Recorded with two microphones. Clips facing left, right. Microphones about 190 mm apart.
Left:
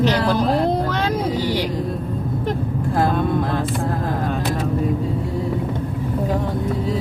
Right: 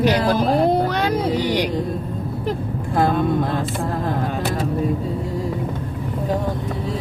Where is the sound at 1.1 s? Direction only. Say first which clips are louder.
Right 1 dB; 15° right (ahead or behind).